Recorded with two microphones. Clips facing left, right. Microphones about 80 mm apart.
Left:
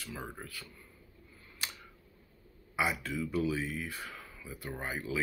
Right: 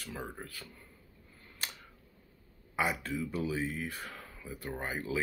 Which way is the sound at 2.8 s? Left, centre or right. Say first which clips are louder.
Even; right.